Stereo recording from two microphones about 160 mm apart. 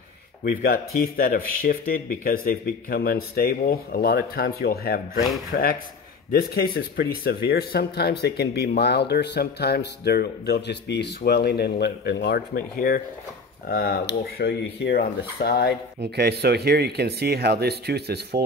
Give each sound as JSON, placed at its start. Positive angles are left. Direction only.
{"t": 0.4, "sound": "speech", "side_deg": 70}
{"t": 6.3, "sound": "speech", "side_deg": 75}
{"t": 16.0, "sound": "speech", "side_deg": -90}